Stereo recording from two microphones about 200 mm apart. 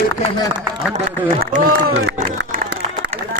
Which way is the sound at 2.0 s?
60° right (ahead or behind).